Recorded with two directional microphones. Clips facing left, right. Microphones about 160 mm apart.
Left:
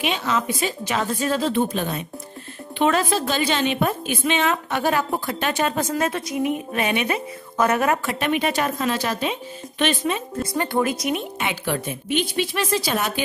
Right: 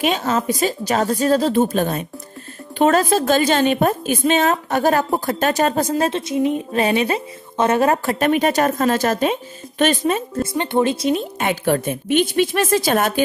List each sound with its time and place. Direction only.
0.0 s a woman's voice: 45° right (ahead or behind)
10.4 s speech: 25° right (ahead or behind)
11.3 s a woman's voice: 45° right (ahead or behind)